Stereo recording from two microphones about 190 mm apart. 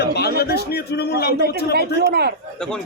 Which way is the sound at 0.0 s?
60° left (ahead or behind).